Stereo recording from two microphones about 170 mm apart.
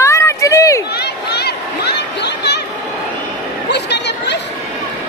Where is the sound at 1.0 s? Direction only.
70° left (ahead or behind).